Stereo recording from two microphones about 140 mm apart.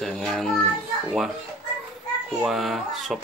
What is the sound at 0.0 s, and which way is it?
Child singing, 5° left (ahead or behind).